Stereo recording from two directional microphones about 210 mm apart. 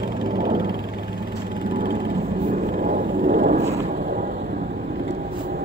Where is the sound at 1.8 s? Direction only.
40° right (ahead or behind).